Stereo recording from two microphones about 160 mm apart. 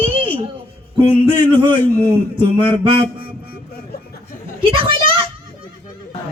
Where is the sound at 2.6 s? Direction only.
35° right (ahead or behind).